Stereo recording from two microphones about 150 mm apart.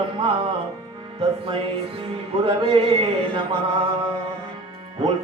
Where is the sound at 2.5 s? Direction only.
35° right (ahead or behind).